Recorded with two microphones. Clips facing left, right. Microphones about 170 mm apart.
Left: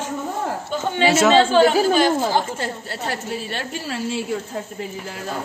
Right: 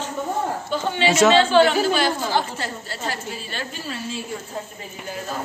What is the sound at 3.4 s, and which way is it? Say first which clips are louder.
Speech: left 3 dB; 70° left (ahead or behind).